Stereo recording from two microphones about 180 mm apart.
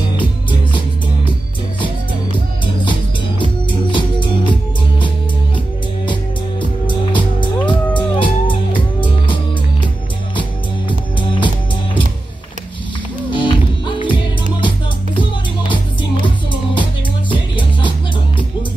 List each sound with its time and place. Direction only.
0.2 s music: 25° left (ahead or behind)
2.6 s music: 25° left (ahead or behind)
6.6 s music: 25° left (ahead or behind)
10.9 s music: 25° left (ahead or behind)
13.3 s music: 25° left (ahead or behind)
15.7 s music: 25° left (ahead or behind)